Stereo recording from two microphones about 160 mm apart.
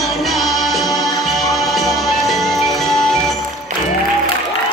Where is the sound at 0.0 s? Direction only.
Centre (ahead or behind).